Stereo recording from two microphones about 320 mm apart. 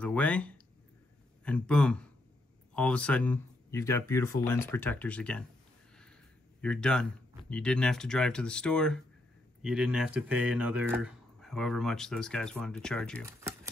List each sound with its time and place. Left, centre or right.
0.0 s speech: centre
6.6 s speech: centre
13.2 s speech: centre